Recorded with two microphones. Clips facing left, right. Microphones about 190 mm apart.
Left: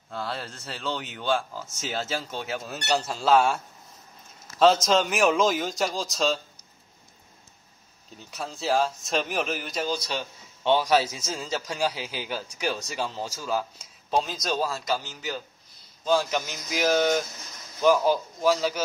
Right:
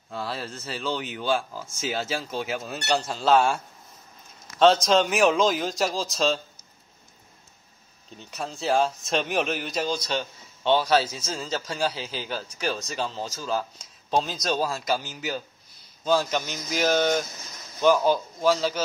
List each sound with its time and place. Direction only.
0.1 s speech: 5° right (ahead or behind)
8.2 s speech: centre (ahead or behind)